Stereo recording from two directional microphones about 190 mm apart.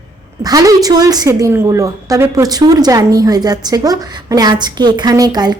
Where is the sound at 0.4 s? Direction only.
20° right (ahead or behind).